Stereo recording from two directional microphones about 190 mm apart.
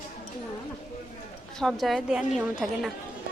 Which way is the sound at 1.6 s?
Centre (ahead or behind).